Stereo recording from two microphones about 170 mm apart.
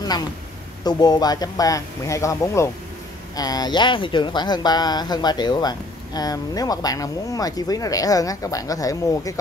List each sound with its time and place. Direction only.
0.8 s speech: 25° left (ahead or behind)